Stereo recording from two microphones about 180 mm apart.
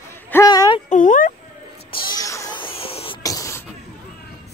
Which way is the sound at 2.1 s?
20° left (ahead or behind).